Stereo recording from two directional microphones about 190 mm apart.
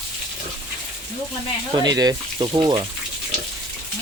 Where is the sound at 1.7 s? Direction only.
20° right (ahead or behind).